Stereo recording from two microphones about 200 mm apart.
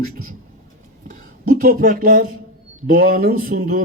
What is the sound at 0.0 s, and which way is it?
Speech, 45° right (ahead or behind).